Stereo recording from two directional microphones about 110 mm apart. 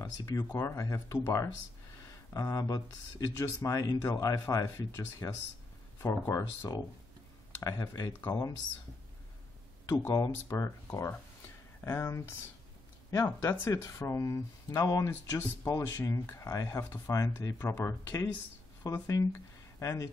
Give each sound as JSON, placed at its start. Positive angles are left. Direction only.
{"t": 0.0, "sound": "speech", "side_deg": 30}
{"t": 2.0, "sound": "a sound", "side_deg": 30}
{"t": 3.3, "sound": "speech", "side_deg": 30}
{"t": 9.8, "sound": "speech", "side_deg": 30}
{"t": 11.8, "sound": "speech", "side_deg": 25}